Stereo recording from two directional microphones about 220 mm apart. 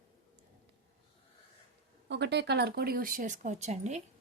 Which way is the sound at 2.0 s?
50° right (ahead or behind).